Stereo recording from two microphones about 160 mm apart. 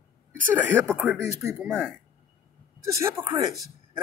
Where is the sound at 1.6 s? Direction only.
5° left (ahead or behind).